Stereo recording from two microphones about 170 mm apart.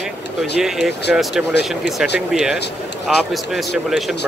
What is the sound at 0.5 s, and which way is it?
Speech, centre (ahead or behind).